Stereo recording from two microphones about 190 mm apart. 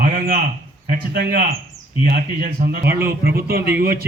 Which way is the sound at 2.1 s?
45° right (ahead or behind).